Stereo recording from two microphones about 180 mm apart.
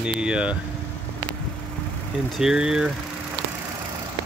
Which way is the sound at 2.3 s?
5° right (ahead or behind).